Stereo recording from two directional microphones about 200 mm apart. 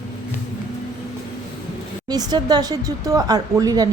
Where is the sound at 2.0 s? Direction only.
20° right (ahead or behind).